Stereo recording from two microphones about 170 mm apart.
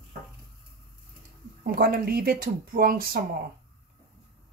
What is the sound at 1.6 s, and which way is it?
Speech, 60° right (ahead or behind).